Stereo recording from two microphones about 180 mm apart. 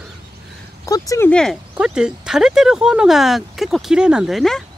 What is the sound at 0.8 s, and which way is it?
Speech, 20° left (ahead or behind).